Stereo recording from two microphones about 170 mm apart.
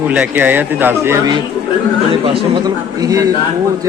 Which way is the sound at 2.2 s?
30° right (ahead or behind).